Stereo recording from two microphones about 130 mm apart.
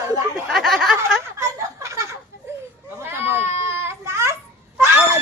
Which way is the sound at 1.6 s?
25° right (ahead or behind).